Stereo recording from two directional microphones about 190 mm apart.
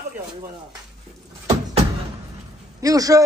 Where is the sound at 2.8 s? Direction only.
20° right (ahead or behind).